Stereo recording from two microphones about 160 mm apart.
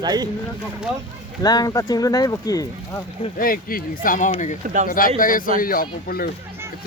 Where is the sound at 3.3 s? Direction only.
65° left (ahead or behind).